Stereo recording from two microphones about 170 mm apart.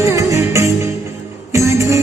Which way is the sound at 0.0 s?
15° right (ahead or behind).